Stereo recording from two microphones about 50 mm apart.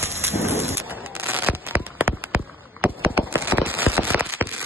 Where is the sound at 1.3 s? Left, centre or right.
Right.